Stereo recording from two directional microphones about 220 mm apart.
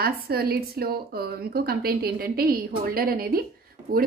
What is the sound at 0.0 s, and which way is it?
A woman's voice, 45° right (ahead or behind).